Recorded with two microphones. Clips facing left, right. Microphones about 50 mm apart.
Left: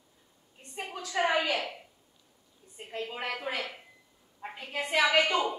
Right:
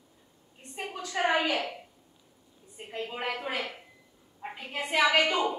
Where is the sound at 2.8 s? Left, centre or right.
Centre.